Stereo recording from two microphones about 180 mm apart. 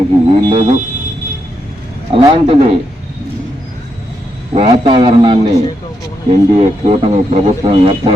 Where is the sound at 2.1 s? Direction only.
35° right (ahead or behind).